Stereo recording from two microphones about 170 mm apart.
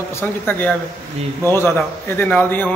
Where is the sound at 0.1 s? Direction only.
10° left (ahead or behind).